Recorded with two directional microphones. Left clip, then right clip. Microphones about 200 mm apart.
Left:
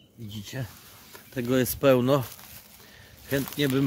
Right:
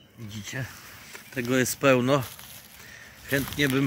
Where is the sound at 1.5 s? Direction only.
20° left (ahead or behind).